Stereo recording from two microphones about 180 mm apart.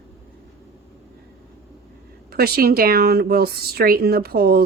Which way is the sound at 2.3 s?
60° right (ahead or behind).